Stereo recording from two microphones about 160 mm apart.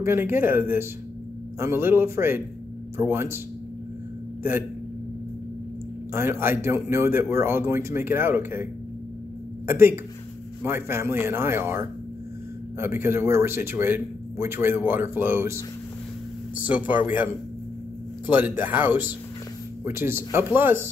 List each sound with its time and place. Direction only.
0.0 s a man's voice: 15° right (ahead or behind)
4.4 s speech: 15° right (ahead or behind)
6.1 s a man's voice: 15° right (ahead or behind)
9.7 s a man's voice: 15° right (ahead or behind)
18.3 s a man's voice: 10° right (ahead or behind)